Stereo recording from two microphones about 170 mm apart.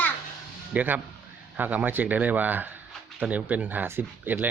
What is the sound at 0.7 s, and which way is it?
A man's voice, 10° right (ahead or behind).